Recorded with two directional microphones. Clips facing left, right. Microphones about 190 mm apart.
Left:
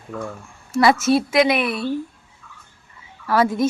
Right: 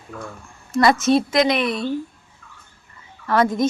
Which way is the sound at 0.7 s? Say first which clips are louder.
Even; 5° left (ahead or behind).